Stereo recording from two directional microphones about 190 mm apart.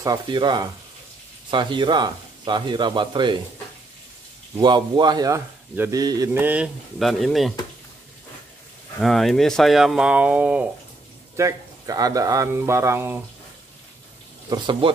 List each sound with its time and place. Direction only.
0.0 s speech: 20° right (ahead or behind)
4.6 s speech: 25° right (ahead or behind); by 7.5 s centre (ahead or behind)
9.0 s speech: centre (ahead or behind)
14.5 s speech: 25° right (ahead or behind)